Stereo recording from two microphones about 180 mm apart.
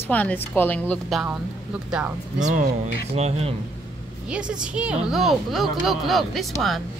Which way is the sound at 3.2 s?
35° right (ahead or behind).